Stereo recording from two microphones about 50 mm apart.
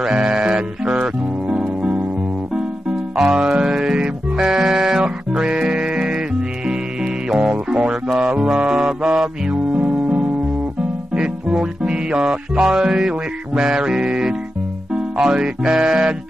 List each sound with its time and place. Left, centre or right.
0.0 s music: centre
2.5 s music: centre
11.6 s music: centre